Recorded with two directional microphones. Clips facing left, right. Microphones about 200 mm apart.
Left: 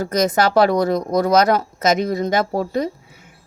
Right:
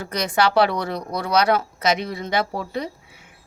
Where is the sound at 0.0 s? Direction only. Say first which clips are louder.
Left 4 dB; 40° left (ahead or behind).